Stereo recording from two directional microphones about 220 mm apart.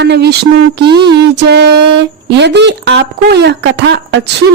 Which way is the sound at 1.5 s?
50° right (ahead or behind).